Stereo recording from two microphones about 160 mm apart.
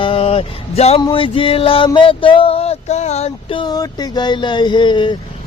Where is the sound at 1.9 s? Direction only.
30° left (ahead or behind).